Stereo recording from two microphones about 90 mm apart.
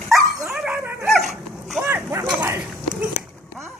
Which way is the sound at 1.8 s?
30° right (ahead or behind).